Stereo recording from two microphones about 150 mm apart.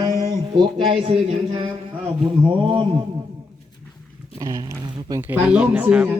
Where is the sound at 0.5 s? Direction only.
35° right (ahead or behind).